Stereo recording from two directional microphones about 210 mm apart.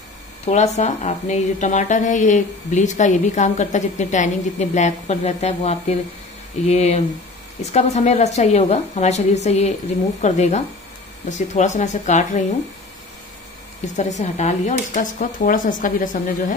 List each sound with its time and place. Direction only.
0.5 s a woman's voice: 35° left (ahead or behind)
13.9 s a woman's voice: 35° left (ahead or behind)